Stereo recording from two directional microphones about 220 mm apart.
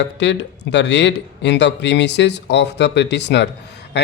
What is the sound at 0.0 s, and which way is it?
Speech, 55° left (ahead or behind).